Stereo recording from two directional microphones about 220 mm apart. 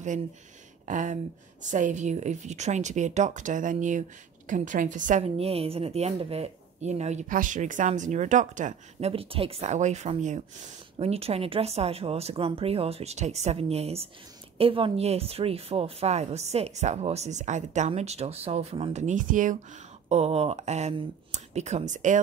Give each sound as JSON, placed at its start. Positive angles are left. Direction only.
{"t": 0.8, "sound": "a woman's voice", "side_deg": -35}